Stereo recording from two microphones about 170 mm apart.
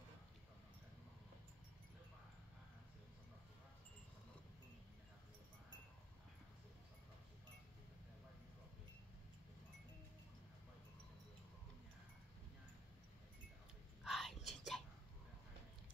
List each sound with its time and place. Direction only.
14.0 s whispering: centre (ahead or behind)